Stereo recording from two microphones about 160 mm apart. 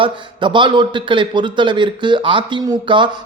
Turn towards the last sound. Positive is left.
turn(degrees=-30)  # may be behind; listen again after turning